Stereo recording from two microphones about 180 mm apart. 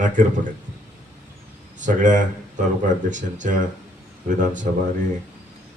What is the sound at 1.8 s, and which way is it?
Speech, 45° right (ahead or behind).